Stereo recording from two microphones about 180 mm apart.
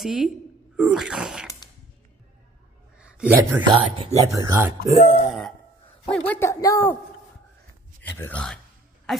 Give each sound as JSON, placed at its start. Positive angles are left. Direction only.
{"t": 0.0, "sound": "a sound", "side_deg": 0}
{"t": 3.0, "sound": "a sound", "side_deg": -5}
{"t": 3.6, "sound": "speech", "side_deg": -30}
{"t": 4.3, "sound": "speech", "side_deg": -15}
{"t": 6.0, "sound": "a man's voice", "side_deg": 10}
{"t": 8.0, "sound": "speech", "side_deg": 10}